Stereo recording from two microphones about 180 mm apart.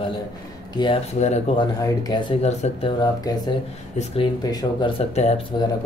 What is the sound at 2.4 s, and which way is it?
Speech, 35° left (ahead or behind).